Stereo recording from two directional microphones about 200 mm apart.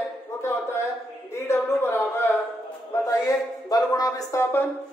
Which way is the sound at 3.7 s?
20° left (ahead or behind).